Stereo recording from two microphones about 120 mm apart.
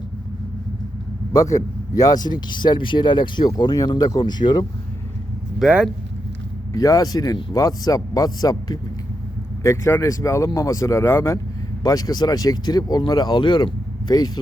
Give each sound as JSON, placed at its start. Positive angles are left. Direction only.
{"t": 1.3, "sound": "speech", "side_deg": 30}
{"t": 5.5, "sound": "speech", "side_deg": -5}
{"t": 6.7, "sound": "speech", "side_deg": 30}